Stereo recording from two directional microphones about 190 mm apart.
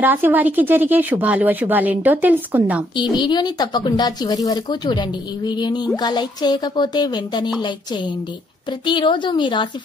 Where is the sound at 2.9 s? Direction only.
25° left (ahead or behind).